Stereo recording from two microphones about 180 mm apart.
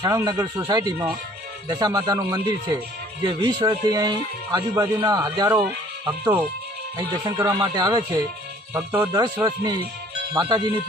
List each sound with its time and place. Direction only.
0.0 s speech: 20° right (ahead or behind)
6.9 s speech: 20° right (ahead or behind)
9.4 s speech: 20° right (ahead or behind)